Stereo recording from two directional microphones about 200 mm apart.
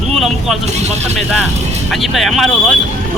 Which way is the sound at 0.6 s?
35° right (ahead or behind).